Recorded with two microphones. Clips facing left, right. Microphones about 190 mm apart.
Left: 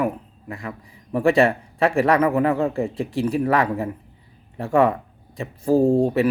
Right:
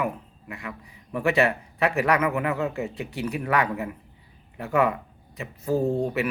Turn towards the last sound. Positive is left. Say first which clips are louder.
# left 7 dB
turn(degrees=30)  # may be behind; listen again after turning